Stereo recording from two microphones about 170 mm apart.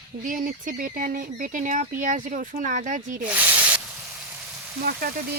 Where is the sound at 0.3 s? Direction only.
55° right (ahead or behind).